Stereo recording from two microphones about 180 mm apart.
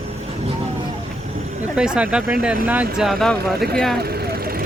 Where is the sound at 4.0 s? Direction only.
60° right (ahead or behind).